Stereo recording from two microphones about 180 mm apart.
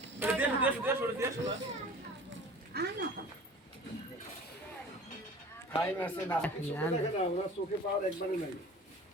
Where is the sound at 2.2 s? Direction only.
65° right (ahead or behind).